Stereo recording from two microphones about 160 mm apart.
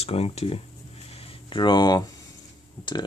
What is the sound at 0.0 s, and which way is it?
Speech, 40° left (ahead or behind).